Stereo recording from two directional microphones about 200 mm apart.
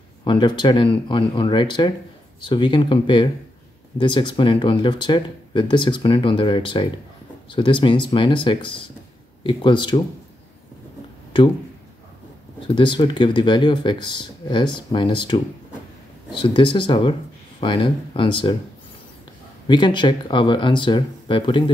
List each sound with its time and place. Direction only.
0.2 s speech: 25° left (ahead or behind)
12.6 s speech: 25° left (ahead or behind)
19.7 s speech: 20° left (ahead or behind)